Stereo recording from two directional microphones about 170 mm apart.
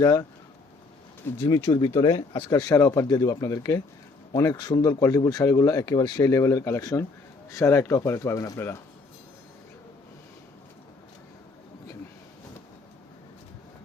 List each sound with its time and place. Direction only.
0.0 s speech: 20° left (ahead or behind)
1.4 s speech: 25° left (ahead or behind)
1.6 s speech: 15° left (ahead or behind)